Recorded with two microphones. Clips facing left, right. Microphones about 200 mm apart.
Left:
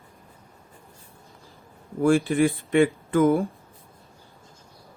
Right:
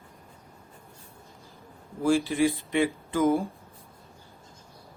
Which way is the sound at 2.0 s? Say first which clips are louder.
Left 3 dB; 55° left (ahead or behind).